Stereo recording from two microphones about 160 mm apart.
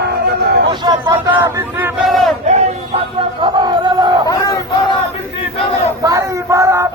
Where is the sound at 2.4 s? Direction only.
45° right (ahead or behind).